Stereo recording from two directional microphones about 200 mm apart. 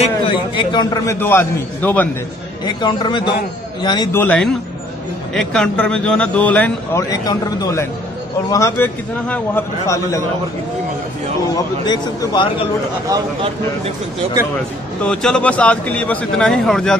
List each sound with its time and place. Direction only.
0.0 s a sound: 25° left (ahead or behind)
1.2 s speech: 10° left (ahead or behind)
2.6 s a man's voice: 20° left (ahead or behind)
4.2 s speech: 5° left (ahead or behind)
11.5 s a man's voice: 20° left (ahead or behind)
15.0 s speech: 5° left (ahead or behind)